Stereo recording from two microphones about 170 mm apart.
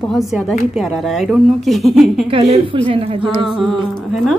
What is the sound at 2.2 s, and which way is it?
A woman's voice, 35° right (ahead or behind).